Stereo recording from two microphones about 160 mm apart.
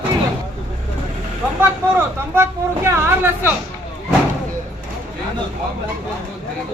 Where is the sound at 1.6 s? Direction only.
15° right (ahead or behind).